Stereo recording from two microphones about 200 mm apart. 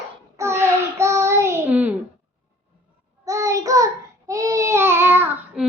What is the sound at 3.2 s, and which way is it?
A child's voice, 15° right (ahead or behind).